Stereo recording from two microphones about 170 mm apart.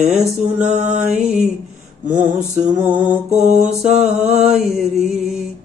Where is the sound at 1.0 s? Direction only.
5° right (ahead or behind).